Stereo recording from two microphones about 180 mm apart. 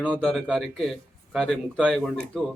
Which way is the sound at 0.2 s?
Centre (ahead or behind).